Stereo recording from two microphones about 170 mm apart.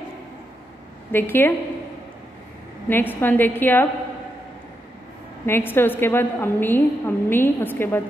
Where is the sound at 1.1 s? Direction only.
10° left (ahead or behind).